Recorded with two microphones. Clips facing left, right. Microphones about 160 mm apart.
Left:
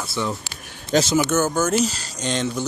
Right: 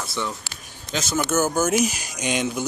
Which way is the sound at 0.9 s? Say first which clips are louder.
Left 10 dB; 45° left (ahead or behind).